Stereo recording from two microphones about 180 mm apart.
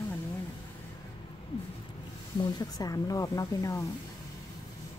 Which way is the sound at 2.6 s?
20° left (ahead or behind).